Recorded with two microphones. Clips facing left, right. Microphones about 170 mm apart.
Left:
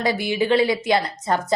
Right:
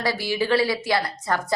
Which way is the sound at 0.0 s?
20° left (ahead or behind).